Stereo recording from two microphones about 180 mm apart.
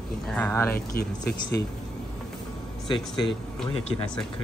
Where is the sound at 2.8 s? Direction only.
25° left (ahead or behind).